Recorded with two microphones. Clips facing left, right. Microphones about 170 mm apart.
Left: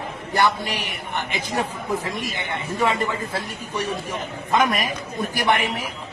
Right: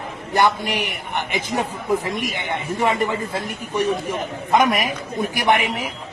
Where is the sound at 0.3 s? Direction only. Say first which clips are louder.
Right 3 dB; 20° right (ahead or behind).